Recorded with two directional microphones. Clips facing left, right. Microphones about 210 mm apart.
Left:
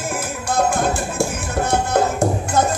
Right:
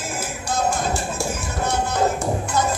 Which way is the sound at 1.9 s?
50° left (ahead or behind).